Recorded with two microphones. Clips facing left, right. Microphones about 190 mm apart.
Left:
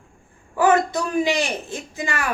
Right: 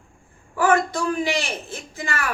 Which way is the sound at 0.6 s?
20° left (ahead or behind).